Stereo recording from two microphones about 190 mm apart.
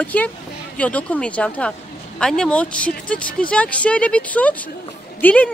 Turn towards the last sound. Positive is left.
turn(degrees=5)  # may be behind; listen again after turning